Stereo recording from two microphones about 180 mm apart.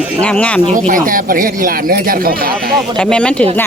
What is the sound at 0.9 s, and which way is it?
Speech, 50° right (ahead or behind).